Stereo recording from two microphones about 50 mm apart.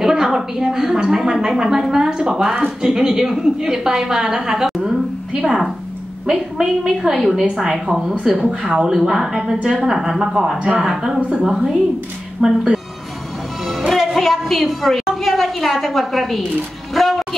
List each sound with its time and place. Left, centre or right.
0.0 s a woman's voice: centre
5.3 s a woman's voice: centre
11.1 s a woman's voice: right
12.4 s a woman's voice: centre
13.9 s a woman's voice: centre